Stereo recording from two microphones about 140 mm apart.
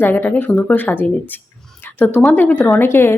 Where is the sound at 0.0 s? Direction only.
15° left (ahead or behind).